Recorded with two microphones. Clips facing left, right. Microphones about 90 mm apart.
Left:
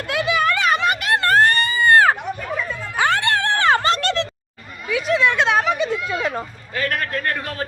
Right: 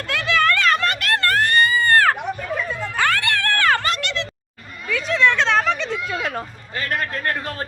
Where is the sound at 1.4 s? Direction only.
30° left (ahead or behind).